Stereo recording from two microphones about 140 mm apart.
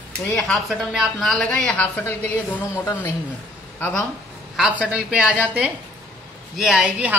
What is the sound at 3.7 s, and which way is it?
Speech, 15° left (ahead or behind).